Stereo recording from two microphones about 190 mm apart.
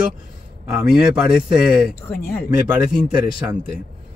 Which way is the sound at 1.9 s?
55° left (ahead or behind).